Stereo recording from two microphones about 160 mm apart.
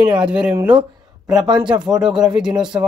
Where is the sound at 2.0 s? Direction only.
5° right (ahead or behind).